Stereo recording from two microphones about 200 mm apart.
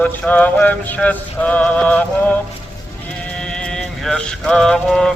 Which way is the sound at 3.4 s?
5° left (ahead or behind).